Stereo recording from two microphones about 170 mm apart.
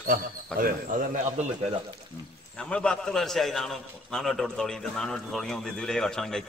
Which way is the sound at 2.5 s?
5° left (ahead or behind).